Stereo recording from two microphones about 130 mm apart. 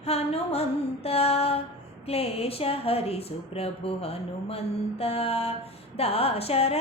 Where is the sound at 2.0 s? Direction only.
50° left (ahead or behind).